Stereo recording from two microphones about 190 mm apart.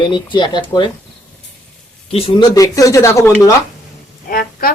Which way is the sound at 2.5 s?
15° left (ahead or behind).